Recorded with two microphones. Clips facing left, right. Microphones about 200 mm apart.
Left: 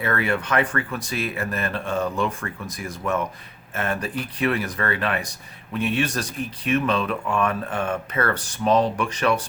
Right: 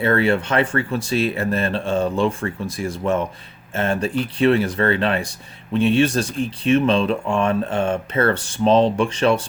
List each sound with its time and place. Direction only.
0.0 s speech: 30° right (ahead or behind)